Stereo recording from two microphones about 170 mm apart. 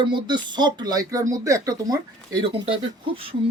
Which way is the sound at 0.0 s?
25° right (ahead or behind).